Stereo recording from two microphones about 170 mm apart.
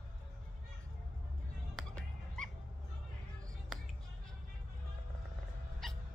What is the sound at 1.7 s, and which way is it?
Music, 5° left (ahead or behind).